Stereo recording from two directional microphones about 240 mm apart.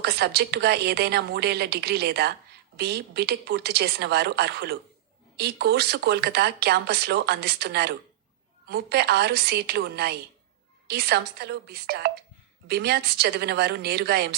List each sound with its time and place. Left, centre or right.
0.0 s speech: right